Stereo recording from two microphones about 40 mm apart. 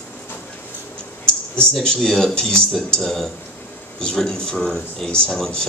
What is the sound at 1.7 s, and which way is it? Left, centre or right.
A man's voice, centre.